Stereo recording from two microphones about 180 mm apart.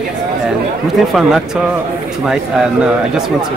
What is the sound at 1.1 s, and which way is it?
Speech, centre (ahead or behind).